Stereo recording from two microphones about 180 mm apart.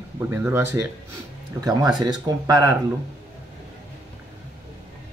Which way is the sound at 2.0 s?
20° right (ahead or behind).